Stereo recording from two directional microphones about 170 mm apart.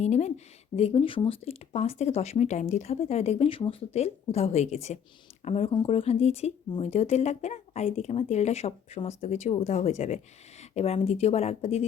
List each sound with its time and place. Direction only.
0.0 s speech: 40° left (ahead or behind)